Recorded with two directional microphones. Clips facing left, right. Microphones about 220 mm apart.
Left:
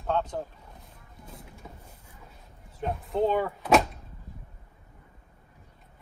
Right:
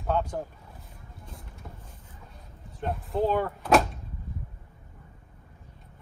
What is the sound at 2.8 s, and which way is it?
Speech, centre (ahead or behind).